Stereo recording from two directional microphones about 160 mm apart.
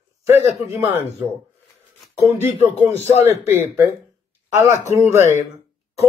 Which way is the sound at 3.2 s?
15° right (ahead or behind).